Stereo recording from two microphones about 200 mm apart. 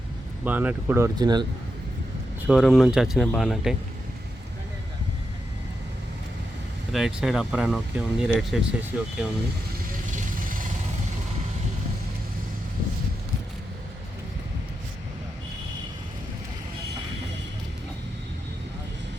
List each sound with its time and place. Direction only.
0.4 s speech: 10° right (ahead or behind)
2.5 s speech: centre (ahead or behind)
6.9 s speech: centre (ahead or behind)
10.1 s vehicle: 40° right (ahead or behind)